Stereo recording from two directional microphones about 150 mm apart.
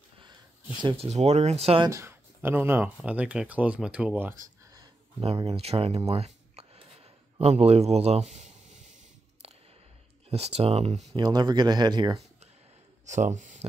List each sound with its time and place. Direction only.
0.8 s speech: 45° right (ahead or behind)
1.9 s speech: 15° right (ahead or behind)
5.2 s speech: 40° right (ahead or behind)
10.3 s speech: 45° right (ahead or behind)
11.1 s speech: 30° right (ahead or behind)
13.0 s speech: 55° right (ahead or behind)